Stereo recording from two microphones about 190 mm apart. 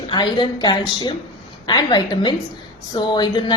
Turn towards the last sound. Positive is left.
turn(degrees=25)  # may be behind; listen again after turning